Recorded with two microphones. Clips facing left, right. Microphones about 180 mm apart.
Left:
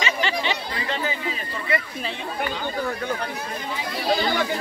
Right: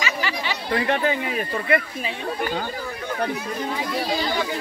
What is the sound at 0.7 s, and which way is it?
Speech, 55° right (ahead or behind).